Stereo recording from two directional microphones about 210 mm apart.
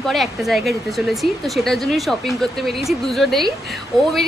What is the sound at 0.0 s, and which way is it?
A woman's voice, centre (ahead or behind).